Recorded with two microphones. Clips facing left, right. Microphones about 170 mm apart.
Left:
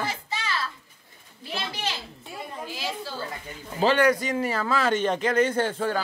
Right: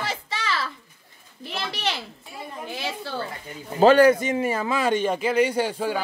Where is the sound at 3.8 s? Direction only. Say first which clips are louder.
Right 7 dB; 45° right (ahead or behind).